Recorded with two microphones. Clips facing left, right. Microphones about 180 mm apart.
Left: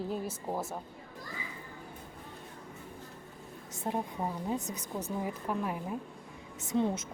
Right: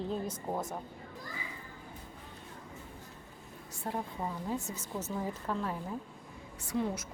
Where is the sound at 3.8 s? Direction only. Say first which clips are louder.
Left 3 dB; 20° left (ahead or behind).